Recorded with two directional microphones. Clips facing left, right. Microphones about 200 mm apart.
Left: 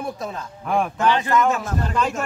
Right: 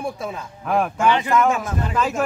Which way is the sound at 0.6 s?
5° right (ahead or behind).